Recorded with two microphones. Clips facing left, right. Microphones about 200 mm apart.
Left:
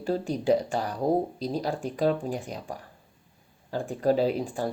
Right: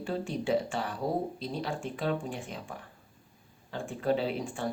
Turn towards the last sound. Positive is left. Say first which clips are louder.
# left 6 dB
turn(degrees=40)  # may be behind; listen again after turning